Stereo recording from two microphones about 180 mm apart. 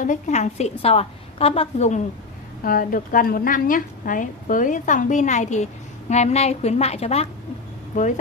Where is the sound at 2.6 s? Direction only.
50° left (ahead or behind); by 7.3 s 35° left (ahead or behind).